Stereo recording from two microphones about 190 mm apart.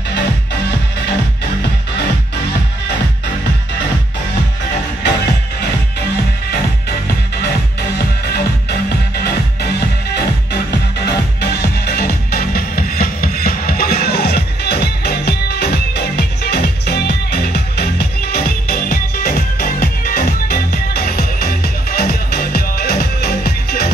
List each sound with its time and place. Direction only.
8.3 s music: 55° left (ahead or behind)
11.1 s music: 55° left (ahead or behind)